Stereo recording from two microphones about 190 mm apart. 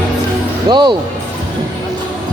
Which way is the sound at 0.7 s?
25° right (ahead or behind).